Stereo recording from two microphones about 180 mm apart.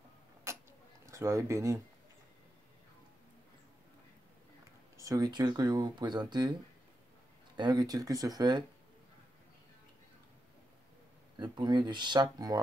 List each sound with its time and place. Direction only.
0.5 s a sound: 15° right (ahead or behind)
1.0 s speech: 15° right (ahead or behind)
4.9 s speech: 20° right (ahead or behind)
7.5 s speech: 25° right (ahead or behind)
11.3 s speech: 25° right (ahead or behind)